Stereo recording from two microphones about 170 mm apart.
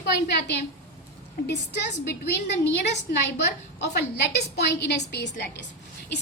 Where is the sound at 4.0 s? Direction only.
75° left (ahead or behind).